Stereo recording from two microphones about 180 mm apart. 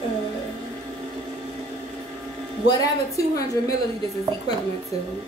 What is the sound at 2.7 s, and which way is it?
Speech, 20° left (ahead or behind).